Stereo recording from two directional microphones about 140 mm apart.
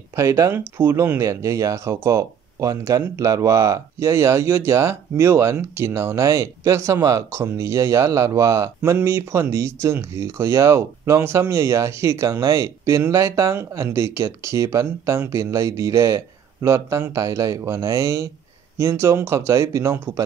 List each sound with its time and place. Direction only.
0.1 s speech: 20° right (ahead or behind)